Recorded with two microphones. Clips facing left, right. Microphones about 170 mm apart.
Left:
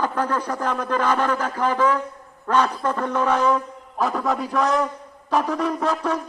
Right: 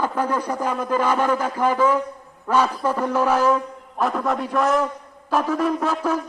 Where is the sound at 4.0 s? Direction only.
Centre (ahead or behind).